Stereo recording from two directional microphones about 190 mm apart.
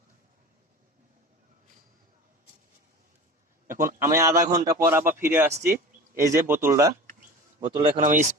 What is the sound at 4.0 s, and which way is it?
A man's voice, 15° right (ahead or behind).